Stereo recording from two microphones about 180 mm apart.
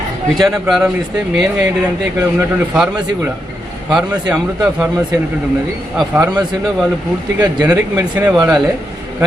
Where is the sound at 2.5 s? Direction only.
10° right (ahead or behind).